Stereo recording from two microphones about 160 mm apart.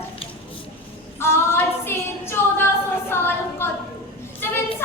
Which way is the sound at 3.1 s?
15° left (ahead or behind).